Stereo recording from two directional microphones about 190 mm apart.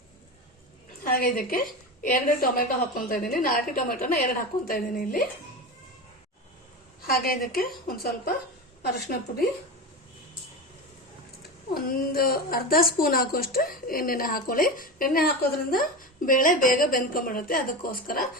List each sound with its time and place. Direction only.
1.0 s a woman's voice: 50° left (ahead or behind)
7.1 s a woman's voice: 50° left (ahead or behind)
11.7 s a woman's voice: 50° left (ahead or behind)